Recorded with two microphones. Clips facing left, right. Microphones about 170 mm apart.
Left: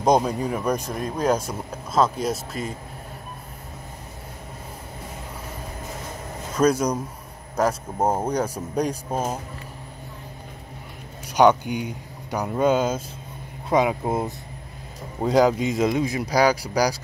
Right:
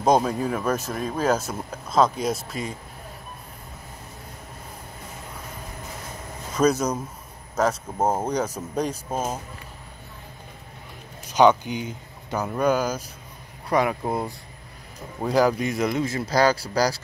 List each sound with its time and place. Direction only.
0.1 s speech: 15° left (ahead or behind)
1.0 s speech: 5° right (ahead or behind)
1.3 s speech: 10° left (ahead or behind)
6.6 s speech: 10° left (ahead or behind)
11.2 s speech: 10° left (ahead or behind)